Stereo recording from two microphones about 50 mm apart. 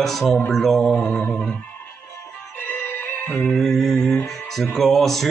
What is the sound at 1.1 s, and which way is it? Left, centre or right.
Music, centre.